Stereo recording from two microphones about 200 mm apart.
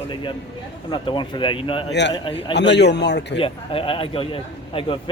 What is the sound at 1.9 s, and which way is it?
A man's voice, 60° left (ahead or behind).